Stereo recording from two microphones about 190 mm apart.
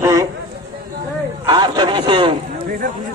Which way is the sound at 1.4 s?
20° right (ahead or behind).